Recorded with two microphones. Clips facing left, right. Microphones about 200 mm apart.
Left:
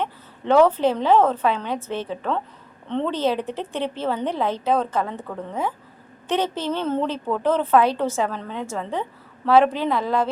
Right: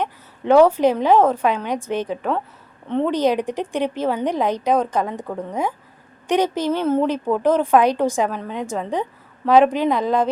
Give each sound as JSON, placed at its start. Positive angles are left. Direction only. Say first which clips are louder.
{"t": 0.0, "sound": "a woman's voice", "louder": "right 2 dB", "side_deg": -15}